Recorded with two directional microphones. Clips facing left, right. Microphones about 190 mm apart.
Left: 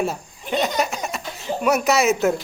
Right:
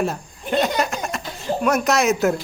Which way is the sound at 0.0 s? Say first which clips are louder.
Right 1 dB; centre (ahead or behind).